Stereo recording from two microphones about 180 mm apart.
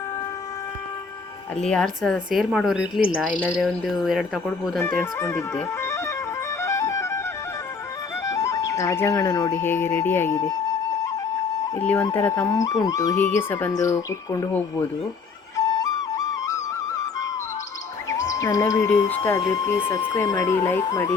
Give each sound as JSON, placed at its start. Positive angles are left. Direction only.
{"t": 1.7, "sound": "a woman's voice", "side_deg": 5}
{"t": 5.2, "sound": "speech", "side_deg": 15}
{"t": 6.6, "sound": "music", "side_deg": 15}
{"t": 8.2, "sound": "speech", "side_deg": 15}
{"t": 11.8, "sound": "speech", "side_deg": 10}
{"t": 12.2, "sound": "speech", "side_deg": 20}
{"t": 15.5, "sound": "flute", "side_deg": 20}
{"t": 18.1, "sound": "speech", "side_deg": 20}